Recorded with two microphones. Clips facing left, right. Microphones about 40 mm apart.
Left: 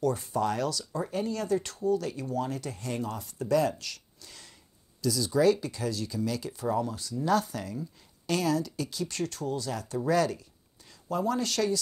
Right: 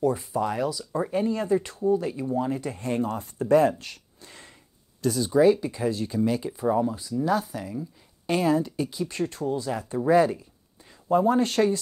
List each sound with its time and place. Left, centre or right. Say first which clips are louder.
0.2 s speech: right 2 dB; centre
8.3 s speech: right 5 dB; right